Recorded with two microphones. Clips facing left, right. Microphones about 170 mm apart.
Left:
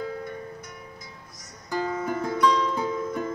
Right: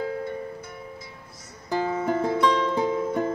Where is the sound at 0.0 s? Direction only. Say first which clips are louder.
Right 4 dB; 30° right (ahead or behind).